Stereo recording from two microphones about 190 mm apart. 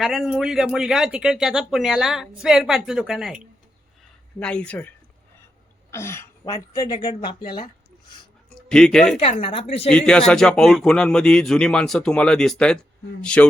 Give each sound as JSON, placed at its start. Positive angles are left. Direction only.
{"t": 0.0, "sound": "speech", "side_deg": 0}
{"t": 5.9, "sound": "speech", "side_deg": 15}
{"t": 8.7, "sound": "speech", "side_deg": 5}
{"t": 9.4, "sound": "a woman's voice", "side_deg": 30}
{"t": 9.9, "sound": "speech", "side_deg": 5}